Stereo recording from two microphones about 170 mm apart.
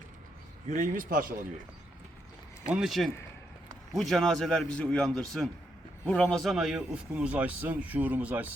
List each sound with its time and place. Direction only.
0.7 s speech: 50° right (ahead or behind)
2.6 s a man's voice: 5° right (ahead or behind)